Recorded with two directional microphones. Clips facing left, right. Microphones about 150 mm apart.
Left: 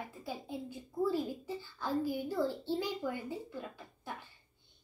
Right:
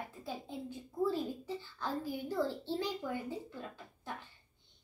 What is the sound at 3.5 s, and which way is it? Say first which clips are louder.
Speech: left 2 dB; 10° left (ahead or behind).